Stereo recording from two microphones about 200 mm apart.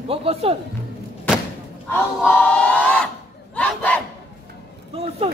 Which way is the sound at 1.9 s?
10° left (ahead or behind).